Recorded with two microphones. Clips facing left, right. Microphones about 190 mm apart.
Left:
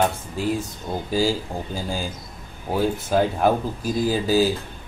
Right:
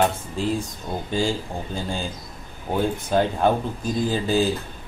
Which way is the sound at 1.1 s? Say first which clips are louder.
Left 2 dB; 5° left (ahead or behind).